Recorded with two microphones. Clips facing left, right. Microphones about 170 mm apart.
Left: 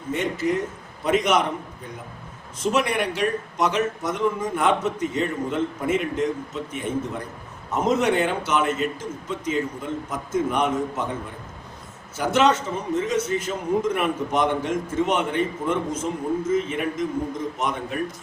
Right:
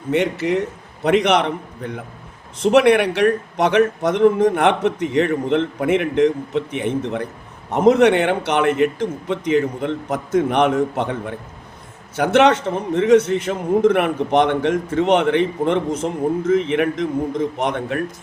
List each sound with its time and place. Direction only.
0.1 s a man's voice: 70° right (ahead or behind)